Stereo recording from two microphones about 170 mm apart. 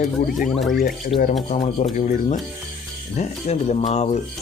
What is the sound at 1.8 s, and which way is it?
Speech, 50° left (ahead or behind).